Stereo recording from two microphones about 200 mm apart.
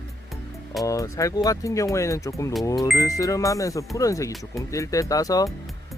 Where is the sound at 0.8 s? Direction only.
15° left (ahead or behind).